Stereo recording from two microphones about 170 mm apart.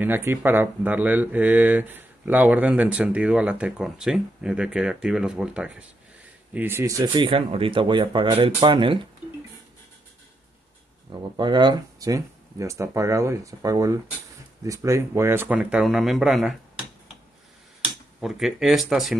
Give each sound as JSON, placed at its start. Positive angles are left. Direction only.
{"t": 0.0, "sound": "speech", "side_deg": -10}
{"t": 11.1, "sound": "speech", "side_deg": -25}
{"t": 18.2, "sound": "speech", "side_deg": 0}